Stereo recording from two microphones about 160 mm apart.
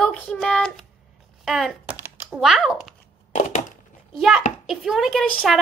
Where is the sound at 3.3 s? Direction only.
50° left (ahead or behind).